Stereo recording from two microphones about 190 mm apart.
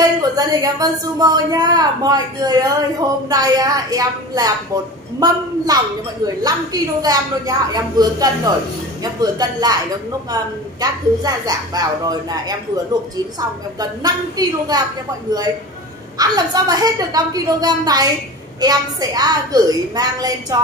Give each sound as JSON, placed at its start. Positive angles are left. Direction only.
{"t": 0.2, "sound": "a woman's voice", "side_deg": -20}
{"t": 13.7, "sound": "a woman's voice", "side_deg": -20}
{"t": 16.2, "sound": "a woman's voice", "side_deg": -20}